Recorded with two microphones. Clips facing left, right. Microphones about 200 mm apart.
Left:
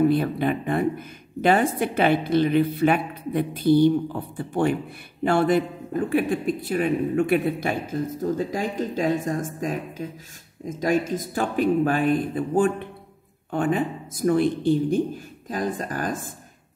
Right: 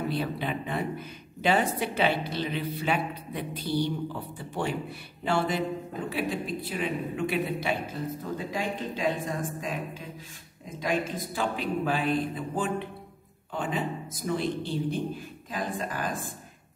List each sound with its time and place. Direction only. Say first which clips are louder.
0.1 s speech: left 8 dB; 50° left (ahead or behind)
10.8 s speech: left 6 dB; 45° left (ahead or behind)